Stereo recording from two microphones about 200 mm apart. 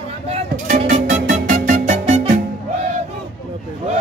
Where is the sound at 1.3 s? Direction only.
40° right (ahead or behind).